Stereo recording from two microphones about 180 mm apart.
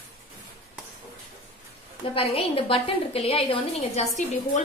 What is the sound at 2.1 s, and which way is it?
A woman's voice, 30° left (ahead or behind).